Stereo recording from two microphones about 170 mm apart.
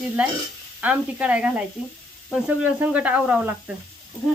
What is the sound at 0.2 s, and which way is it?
Speech, 5° right (ahead or behind).